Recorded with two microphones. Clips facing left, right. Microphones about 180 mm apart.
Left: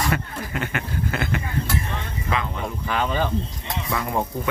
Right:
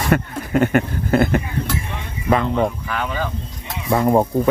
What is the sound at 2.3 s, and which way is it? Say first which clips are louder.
Speech: right 10 dB; 55° right (ahead or behind).